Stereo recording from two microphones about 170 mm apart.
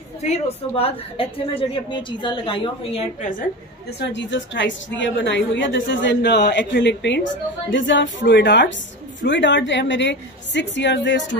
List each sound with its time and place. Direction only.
0.3 s a woman's voice: 35° left (ahead or behind)
4.0 s a woman's voice: 90° left